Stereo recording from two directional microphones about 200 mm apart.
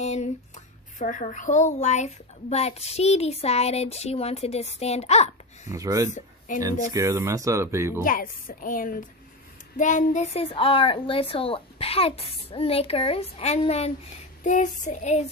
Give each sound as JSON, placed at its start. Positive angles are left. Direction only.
{"t": 0.0, "sound": "a sound", "side_deg": 35}
{"t": 0.9, "sound": "a woman's voice", "side_deg": 40}
{"t": 5.7, "sound": "speech", "side_deg": -15}
{"t": 6.1, "sound": "speech", "side_deg": 40}
{"t": 6.9, "sound": "speech", "side_deg": -15}
{"t": 8.0, "sound": "a woman's voice", "side_deg": 45}